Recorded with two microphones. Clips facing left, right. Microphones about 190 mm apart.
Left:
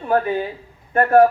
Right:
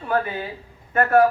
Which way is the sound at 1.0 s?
30° left (ahead or behind).